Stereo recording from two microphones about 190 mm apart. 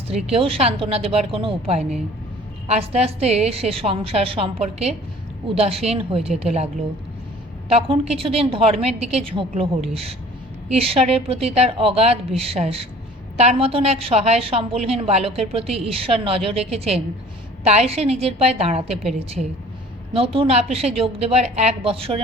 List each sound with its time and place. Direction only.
0.1 s a woman's voice: 30° right (ahead or behind)
7.7 s a woman's voice: 30° right (ahead or behind)
20.1 s a woman's voice: 30° right (ahead or behind)